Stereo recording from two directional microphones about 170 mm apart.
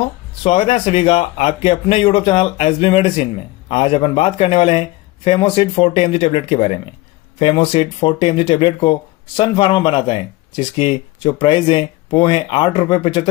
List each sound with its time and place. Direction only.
0.4 s speech: 35° left (ahead or behind)